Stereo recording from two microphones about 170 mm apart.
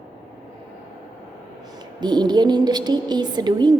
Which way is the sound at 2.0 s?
25° right (ahead or behind).